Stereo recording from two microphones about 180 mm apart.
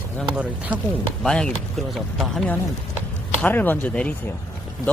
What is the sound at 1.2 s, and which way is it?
Speech, 5° left (ahead or behind).